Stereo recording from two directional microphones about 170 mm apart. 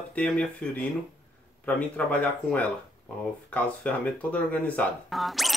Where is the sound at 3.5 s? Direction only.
10° left (ahead or behind).